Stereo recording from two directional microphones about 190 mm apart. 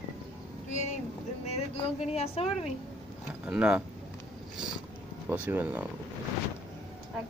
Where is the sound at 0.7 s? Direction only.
40° left (ahead or behind).